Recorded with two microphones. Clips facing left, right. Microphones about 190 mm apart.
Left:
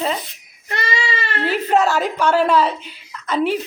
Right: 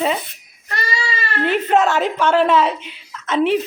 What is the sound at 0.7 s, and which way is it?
Baby cry, 20° left (ahead or behind).